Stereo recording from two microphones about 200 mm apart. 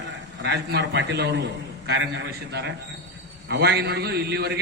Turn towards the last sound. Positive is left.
turn(degrees=-55)  # may be behind; listen again after turning